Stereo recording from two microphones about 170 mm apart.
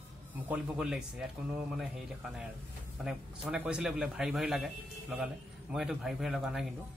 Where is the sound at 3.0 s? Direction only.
5° right (ahead or behind).